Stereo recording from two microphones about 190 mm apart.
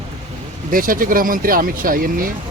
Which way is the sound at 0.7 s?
45° right (ahead or behind).